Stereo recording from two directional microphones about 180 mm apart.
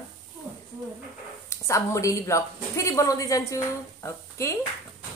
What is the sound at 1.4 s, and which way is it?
A woman's voice, 15° left (ahead or behind).